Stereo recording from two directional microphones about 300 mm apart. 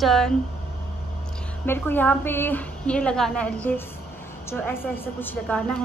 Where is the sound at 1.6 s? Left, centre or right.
Centre.